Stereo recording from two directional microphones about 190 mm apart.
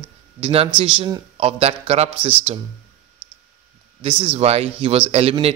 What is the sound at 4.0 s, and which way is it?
A man's voice, 30° right (ahead or behind).